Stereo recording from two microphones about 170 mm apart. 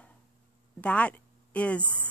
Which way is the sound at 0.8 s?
10° left (ahead or behind).